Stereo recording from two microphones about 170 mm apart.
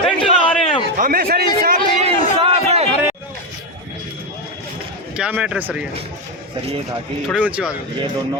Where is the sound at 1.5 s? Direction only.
60° right (ahead or behind).